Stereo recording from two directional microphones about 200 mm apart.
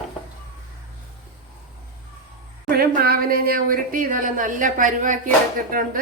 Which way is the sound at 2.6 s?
50° right (ahead or behind).